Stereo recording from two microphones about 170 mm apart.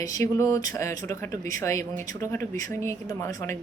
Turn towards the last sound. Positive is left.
turn(degrees=15)  # may be behind; listen again after turning